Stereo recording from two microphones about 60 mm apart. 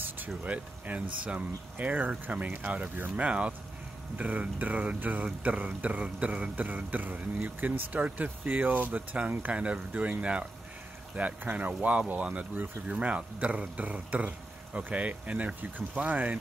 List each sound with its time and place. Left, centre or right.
0.4 s speech: right
11.1 s speech: right